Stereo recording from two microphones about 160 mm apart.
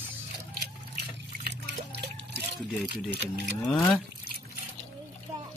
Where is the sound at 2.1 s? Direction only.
90° right.